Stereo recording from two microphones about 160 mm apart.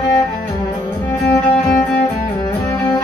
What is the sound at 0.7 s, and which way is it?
Music, 15° left (ahead or behind).